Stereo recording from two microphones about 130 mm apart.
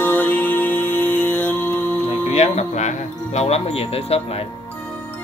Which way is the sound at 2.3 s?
60° left (ahead or behind).